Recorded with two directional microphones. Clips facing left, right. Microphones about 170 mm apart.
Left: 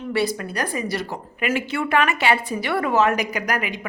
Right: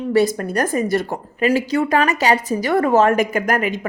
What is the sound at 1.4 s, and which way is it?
A woman's voice, 40° right (ahead or behind).